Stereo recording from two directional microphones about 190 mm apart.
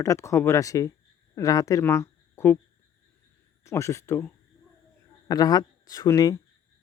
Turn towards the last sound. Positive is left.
turn(degrees=20)  # may be behind; listen again after turning